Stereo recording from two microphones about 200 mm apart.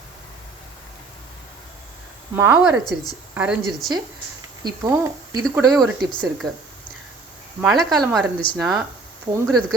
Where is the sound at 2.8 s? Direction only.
20° left (ahead or behind).